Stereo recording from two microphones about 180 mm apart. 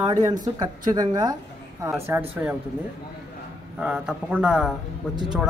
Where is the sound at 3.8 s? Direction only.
5° right (ahead or behind).